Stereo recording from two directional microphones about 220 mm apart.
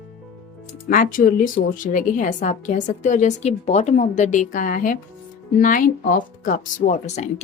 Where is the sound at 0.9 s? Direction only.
40° left (ahead or behind).